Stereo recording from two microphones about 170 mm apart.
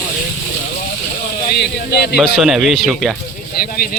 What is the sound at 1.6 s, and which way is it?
Speech, 70° left (ahead or behind).